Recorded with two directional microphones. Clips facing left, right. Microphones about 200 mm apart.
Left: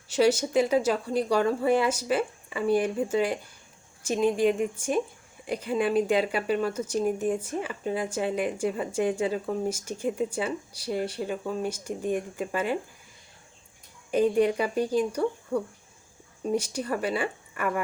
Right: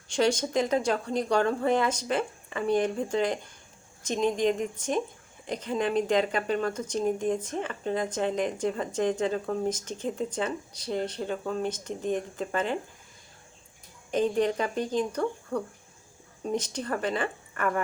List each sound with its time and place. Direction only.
0.1 s speech: 5° left (ahead or behind)
14.1 s speech: 10° left (ahead or behind)